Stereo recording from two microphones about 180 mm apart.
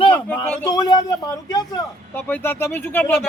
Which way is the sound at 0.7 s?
20° left (ahead or behind).